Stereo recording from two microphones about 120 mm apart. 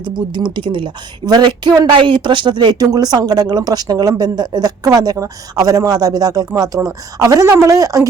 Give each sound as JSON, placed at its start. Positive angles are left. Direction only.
{"t": 0.5, "sound": "a woman's voice", "side_deg": -45}